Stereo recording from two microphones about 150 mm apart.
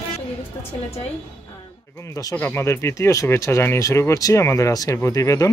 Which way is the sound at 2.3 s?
15° left (ahead or behind).